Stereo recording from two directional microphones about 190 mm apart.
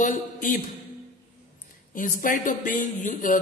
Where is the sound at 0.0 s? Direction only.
45° left (ahead or behind).